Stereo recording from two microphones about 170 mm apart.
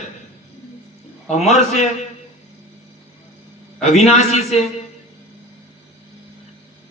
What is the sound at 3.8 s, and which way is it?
Speech, 40° left (ahead or behind).